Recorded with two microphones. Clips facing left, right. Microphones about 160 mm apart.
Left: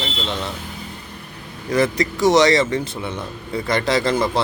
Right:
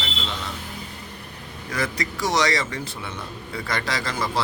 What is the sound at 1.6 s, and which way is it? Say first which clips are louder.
Speech: left 9 dB; 25° left (ahead or behind).